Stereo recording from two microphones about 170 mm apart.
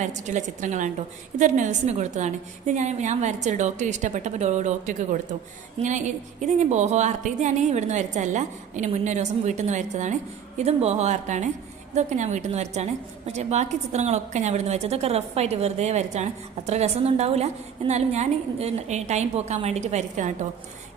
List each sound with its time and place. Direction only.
0.0 s a woman's voice: 45° right (ahead or behind)